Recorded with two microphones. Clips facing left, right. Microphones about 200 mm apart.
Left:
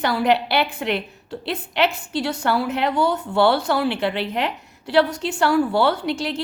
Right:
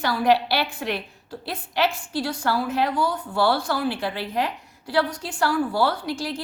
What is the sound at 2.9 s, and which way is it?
Speech, 25° left (ahead or behind).